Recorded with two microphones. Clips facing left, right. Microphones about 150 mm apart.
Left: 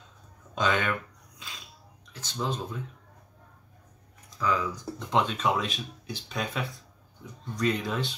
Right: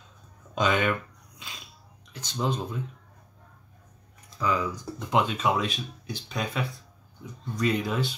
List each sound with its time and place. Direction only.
0.6 s speech: 15° right (ahead or behind)
2.1 s speech: 15° right (ahead or behind)
4.4 s speech: 10° right (ahead or behind)